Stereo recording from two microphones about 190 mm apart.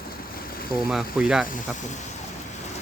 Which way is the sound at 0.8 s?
5° right (ahead or behind).